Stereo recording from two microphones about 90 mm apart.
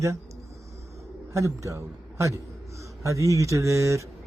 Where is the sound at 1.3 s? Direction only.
35° right (ahead or behind).